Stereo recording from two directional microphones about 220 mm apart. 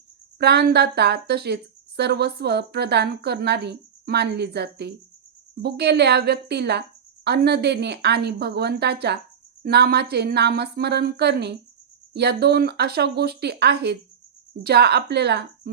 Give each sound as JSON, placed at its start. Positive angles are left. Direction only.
{"t": 0.3, "sound": "a woman's voice", "side_deg": -50}